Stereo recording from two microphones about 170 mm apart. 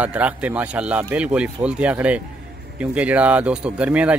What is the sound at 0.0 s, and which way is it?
Speech, 10° right (ahead or behind).